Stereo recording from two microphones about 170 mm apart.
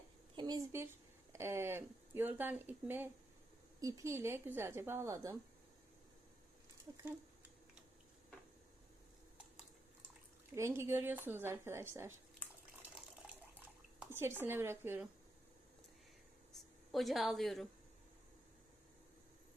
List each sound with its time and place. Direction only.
0.3 s a woman's voice: 25° right (ahead or behind)
6.9 s speech: 20° right (ahead or behind)
10.5 s speech: 15° right (ahead or behind)
14.1 s speech: 15° right (ahead or behind)
16.9 s a woman's voice: centre (ahead or behind)